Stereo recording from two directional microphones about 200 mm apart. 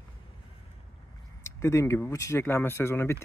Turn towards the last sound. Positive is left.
turn(degrees=10)  # may be behind; listen again after turning